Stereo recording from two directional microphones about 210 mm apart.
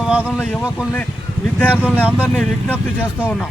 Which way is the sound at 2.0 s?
5° right (ahead or behind).